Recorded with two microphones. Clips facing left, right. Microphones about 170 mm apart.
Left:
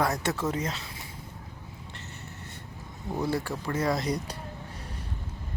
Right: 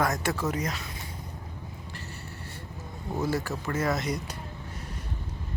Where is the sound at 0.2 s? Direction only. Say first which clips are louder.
Even; 25° left (ahead or behind).